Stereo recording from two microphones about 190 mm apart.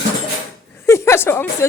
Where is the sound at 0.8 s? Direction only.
15° left (ahead or behind).